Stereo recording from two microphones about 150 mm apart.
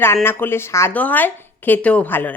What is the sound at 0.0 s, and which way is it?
Speech, 15° left (ahead or behind).